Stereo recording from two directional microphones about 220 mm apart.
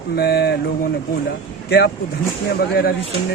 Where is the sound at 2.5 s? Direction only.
45° left (ahead or behind).